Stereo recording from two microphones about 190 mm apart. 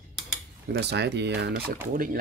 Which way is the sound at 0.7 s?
60° right (ahead or behind).